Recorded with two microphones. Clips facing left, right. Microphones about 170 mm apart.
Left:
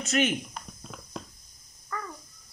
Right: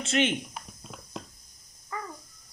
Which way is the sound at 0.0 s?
30° right (ahead or behind).